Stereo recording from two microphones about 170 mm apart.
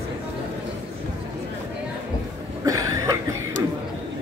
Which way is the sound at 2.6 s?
20° right (ahead or behind).